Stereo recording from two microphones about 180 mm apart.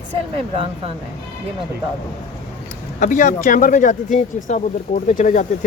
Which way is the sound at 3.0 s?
45° left (ahead or behind).